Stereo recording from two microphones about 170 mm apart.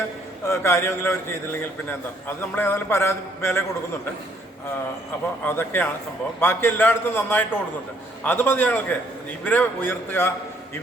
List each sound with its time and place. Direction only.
0.4 s a man's voice: 15° left (ahead or behind)
5.5 s a man's voice: 10° left (ahead or behind)